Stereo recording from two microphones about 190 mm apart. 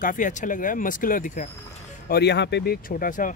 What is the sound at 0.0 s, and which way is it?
Speech, 45° left (ahead or behind).